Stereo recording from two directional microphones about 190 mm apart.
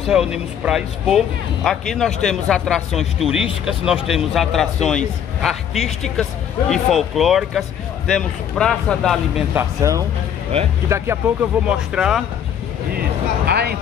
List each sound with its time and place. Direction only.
0.1 s speech: 5° right (ahead or behind)
9.6 s speech: 15° right (ahead or behind)
13.5 s a sound: 60° right (ahead or behind)